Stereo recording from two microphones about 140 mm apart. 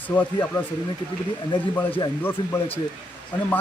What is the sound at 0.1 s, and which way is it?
Speech, 25° left (ahead or behind).